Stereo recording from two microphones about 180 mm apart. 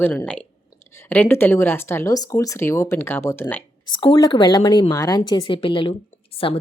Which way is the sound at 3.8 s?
25° left (ahead or behind).